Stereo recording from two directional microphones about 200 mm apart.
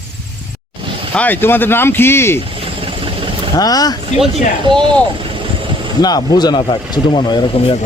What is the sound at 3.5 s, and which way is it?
Speech, 20° left (ahead or behind).